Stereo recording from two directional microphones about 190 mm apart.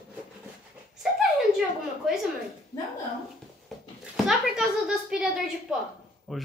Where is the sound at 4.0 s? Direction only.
5° right (ahead or behind).